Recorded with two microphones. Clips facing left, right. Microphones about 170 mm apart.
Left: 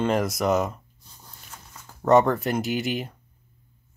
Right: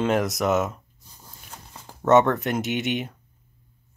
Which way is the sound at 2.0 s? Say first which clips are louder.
Right 1 dB; centre (ahead or behind).